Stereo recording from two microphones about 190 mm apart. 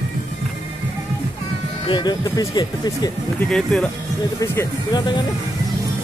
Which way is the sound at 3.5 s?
5° left (ahead or behind).